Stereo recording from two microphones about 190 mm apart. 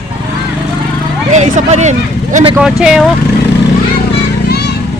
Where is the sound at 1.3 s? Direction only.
35° right (ahead or behind).